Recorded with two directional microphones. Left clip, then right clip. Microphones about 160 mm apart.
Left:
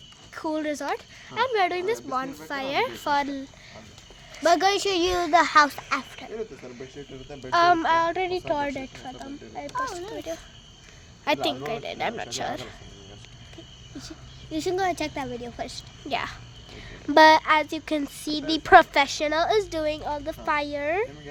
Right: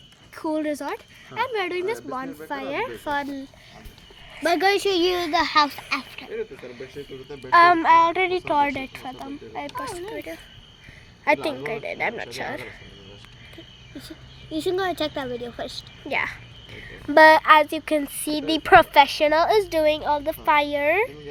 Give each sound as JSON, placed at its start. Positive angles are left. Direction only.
{"t": 0.3, "sound": "speech", "side_deg": 10}
{"t": 4.4, "sound": "a child's voice", "side_deg": -5}
{"t": 5.0, "sound": "speech", "side_deg": 5}
{"t": 5.3, "sound": "a woman's voice", "side_deg": 20}
{"t": 7.5, "sound": "a child's voice", "side_deg": -10}
{"t": 9.8, "sound": "a child's voice", "side_deg": -10}
{"t": 11.3, "sound": "a woman's voice", "side_deg": 25}
{"t": 14.5, "sound": "speech", "side_deg": 0}
{"t": 15.6, "sound": "a woman's voice", "side_deg": 30}
{"t": 17.2, "sound": "speech", "side_deg": 10}
{"t": 17.4, "sound": "a child's voice", "side_deg": -5}